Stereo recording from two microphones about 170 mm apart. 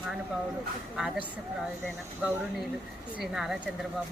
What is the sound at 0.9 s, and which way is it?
Speech, 5° right (ahead or behind).